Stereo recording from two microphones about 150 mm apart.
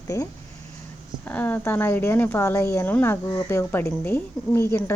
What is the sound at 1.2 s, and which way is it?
A woman's voice, 10° left (ahead or behind).